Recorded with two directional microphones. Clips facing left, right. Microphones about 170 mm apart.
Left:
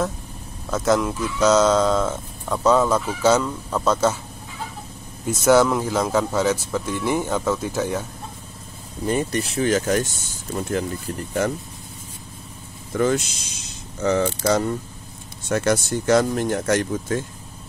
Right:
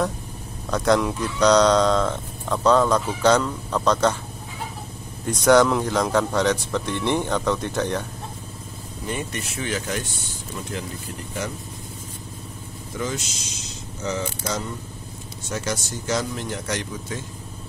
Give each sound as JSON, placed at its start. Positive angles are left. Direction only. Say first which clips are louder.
{"t": 0.7, "sound": "speech", "louder": "even", "side_deg": 5}
{"t": 5.2, "sound": "speech", "louder": "even", "side_deg": 5}
{"t": 9.0, "sound": "speech", "louder": "left 7 dB", "side_deg": 35}
{"t": 12.9, "sound": "mechanisms", "louder": "left 8 dB", "side_deg": 55}
{"t": 15.4, "sound": "speech", "louder": "left 8 dB", "side_deg": 60}